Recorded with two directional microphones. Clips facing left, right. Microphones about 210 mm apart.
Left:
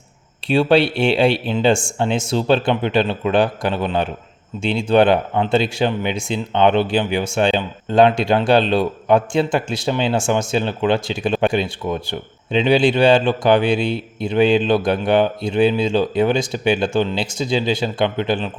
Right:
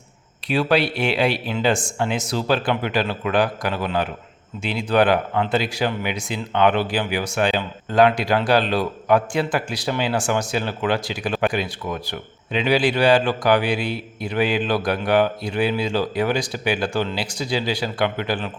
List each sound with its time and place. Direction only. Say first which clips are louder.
0.4 s speech: left 5 dB; 25° left (ahead or behind)